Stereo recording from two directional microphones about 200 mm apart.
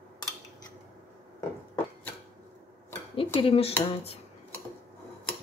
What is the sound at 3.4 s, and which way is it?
Speech, 30° left (ahead or behind).